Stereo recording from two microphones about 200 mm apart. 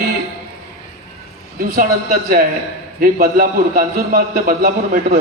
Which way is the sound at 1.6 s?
45° right (ahead or behind).